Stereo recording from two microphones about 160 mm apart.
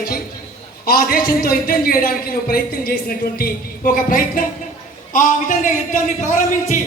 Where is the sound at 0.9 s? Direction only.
65° left (ahead or behind).